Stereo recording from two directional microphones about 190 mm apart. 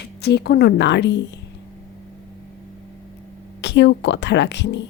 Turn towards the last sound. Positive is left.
turn(degrees=65)  # may be behind; listen again after turning